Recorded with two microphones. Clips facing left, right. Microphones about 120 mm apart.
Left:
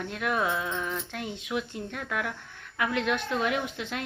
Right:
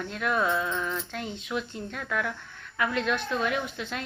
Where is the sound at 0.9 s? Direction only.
55° left (ahead or behind).